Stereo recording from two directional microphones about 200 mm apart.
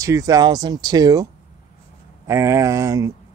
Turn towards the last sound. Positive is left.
turn(degrees=-15)  # may be behind; listen again after turning